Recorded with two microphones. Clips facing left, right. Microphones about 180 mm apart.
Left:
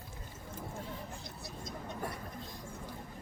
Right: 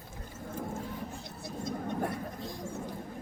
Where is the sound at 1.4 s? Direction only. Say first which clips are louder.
Right 11 dB; 60° right (ahead or behind).